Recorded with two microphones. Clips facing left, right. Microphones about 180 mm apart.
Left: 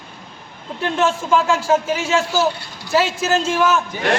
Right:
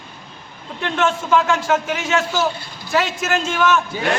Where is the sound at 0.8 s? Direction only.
30° left (ahead or behind).